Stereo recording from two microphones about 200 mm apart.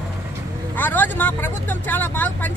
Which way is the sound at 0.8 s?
10° left (ahead or behind).